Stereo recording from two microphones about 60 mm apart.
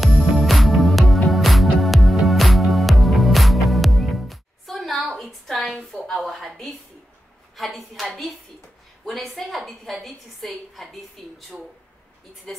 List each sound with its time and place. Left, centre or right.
0.0 s music: centre
5.1 s a sound: centre
7.5 s a woman's voice: centre
12.5 s a woman's voice: centre